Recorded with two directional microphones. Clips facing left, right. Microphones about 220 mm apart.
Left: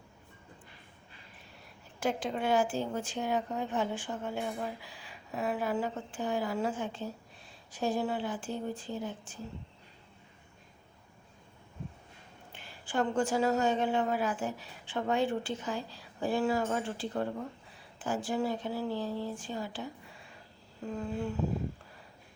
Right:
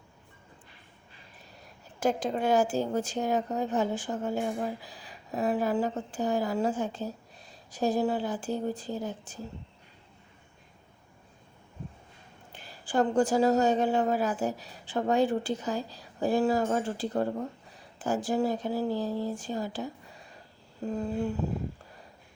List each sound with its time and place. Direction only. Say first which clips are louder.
2.0 s a woman's voice: right 4 dB; 40° right (ahead or behind)
12.5 s a woman's voice: right 5 dB; 40° right (ahead or behind)